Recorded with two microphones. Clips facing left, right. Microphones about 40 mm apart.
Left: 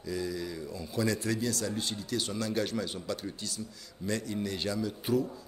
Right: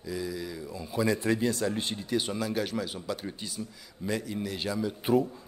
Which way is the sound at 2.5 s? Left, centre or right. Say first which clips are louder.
Right 1 dB; centre.